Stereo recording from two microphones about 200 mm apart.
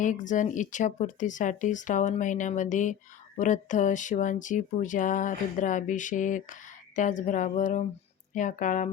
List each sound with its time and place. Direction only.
0.0 s speech: 40° left (ahead or behind)